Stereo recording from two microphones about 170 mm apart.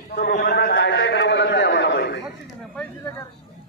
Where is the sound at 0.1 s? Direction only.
70° left (ahead or behind); by 2.2 s 90° left.